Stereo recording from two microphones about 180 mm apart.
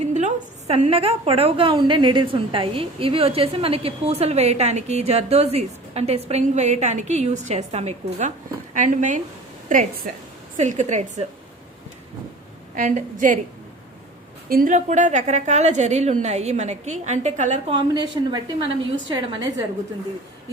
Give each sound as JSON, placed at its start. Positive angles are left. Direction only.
{"t": 0.0, "sound": "a woman's voice", "side_deg": -40}
{"t": 12.7, "sound": "a woman's voice", "side_deg": -45}
{"t": 14.5, "sound": "a woman's voice", "side_deg": -50}
{"t": 17.7, "sound": "a woman's voice", "side_deg": -25}